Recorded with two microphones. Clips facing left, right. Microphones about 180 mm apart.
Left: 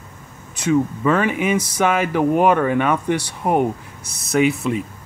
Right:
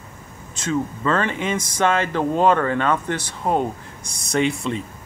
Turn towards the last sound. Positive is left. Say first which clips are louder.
# left 4 dB
turn(degrees=5)  # may be behind; listen again after turning